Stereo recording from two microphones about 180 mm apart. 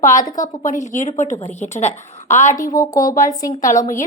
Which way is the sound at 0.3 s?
45° left (ahead or behind).